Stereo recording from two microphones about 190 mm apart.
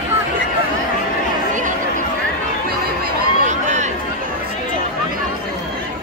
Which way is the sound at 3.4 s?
40° right (ahead or behind).